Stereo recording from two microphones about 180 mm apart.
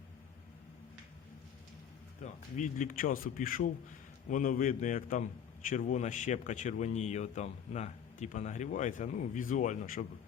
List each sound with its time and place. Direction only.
2.2 s a man's voice: 45° left (ahead or behind)